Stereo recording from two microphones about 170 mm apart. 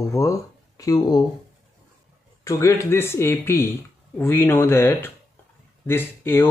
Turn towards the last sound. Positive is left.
turn(degrees=15)  # may be behind; listen again after turning